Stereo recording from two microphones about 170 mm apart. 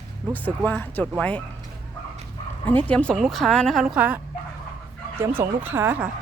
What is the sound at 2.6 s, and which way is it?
Speech, 10° left (ahead or behind).